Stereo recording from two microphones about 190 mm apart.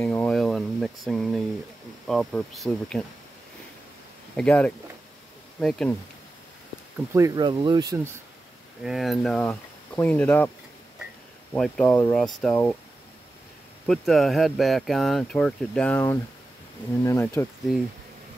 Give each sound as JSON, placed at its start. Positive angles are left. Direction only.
{"t": 0.0, "sound": "a sound", "side_deg": 10}
{"t": 2.0, "sound": "speech", "side_deg": 0}
{"t": 4.4, "sound": "speech", "side_deg": 5}
{"t": 7.2, "sound": "speech", "side_deg": -20}
{"t": 8.8, "sound": "speech", "side_deg": 0}
{"t": 11.5, "sound": "speech", "side_deg": 5}
{"t": 13.8, "sound": "speech", "side_deg": 0}